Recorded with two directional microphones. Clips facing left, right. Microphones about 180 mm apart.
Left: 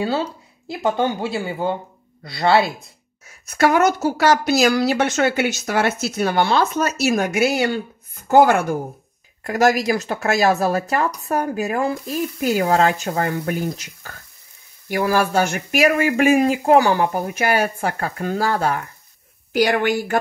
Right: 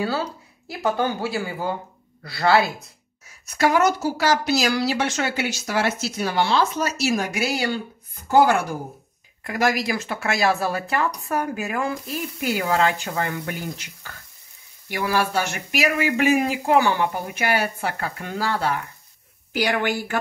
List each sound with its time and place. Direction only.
0.0 s speech: 25° left (ahead or behind)
3.4 s a woman's voice: 50° left (ahead or behind)